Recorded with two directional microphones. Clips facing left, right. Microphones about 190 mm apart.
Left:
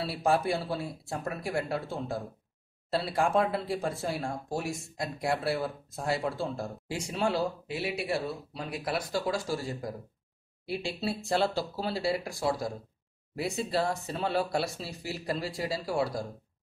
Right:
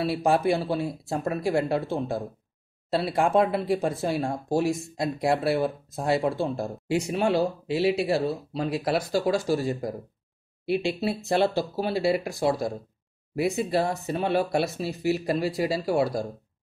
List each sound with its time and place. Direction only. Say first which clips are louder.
0.0 s speech: right 5 dB; 20° right (ahead or behind)
4.2 s speech: right 8 dB; 30° right (ahead or behind)